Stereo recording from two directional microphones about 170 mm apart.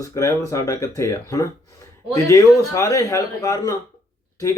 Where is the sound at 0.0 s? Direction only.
20° left (ahead or behind).